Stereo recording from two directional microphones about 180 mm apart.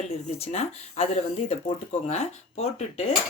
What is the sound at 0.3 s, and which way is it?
Speech, 35° left (ahead or behind).